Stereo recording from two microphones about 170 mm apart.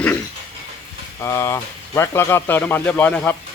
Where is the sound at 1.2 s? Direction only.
15° left (ahead or behind).